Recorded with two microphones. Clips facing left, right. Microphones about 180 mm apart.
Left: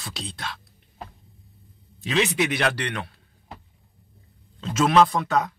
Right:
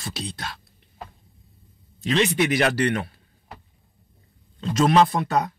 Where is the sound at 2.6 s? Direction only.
45° right (ahead or behind).